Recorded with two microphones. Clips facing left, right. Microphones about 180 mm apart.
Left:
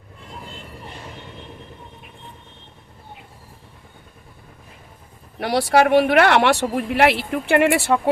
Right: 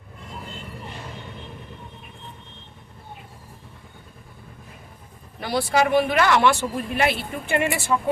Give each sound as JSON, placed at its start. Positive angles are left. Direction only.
{"t": 5.4, "sound": "speech", "side_deg": 75}